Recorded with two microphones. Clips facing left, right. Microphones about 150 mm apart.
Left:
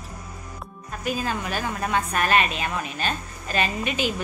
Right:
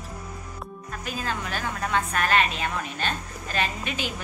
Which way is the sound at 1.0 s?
15° left (ahead or behind).